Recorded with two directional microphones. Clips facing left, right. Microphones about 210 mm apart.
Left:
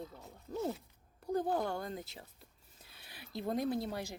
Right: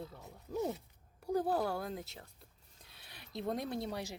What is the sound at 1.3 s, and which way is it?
Speech, 5° right (ahead or behind).